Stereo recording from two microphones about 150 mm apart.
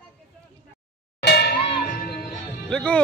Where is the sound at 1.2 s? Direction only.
90° left.